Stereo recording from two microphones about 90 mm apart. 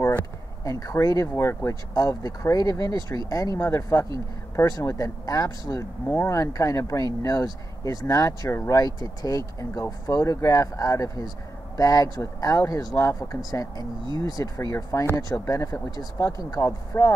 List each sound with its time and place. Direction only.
0.7 s speech: 40° left (ahead or behind)